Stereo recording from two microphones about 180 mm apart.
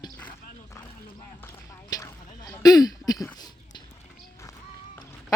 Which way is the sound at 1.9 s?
20° left (ahead or behind).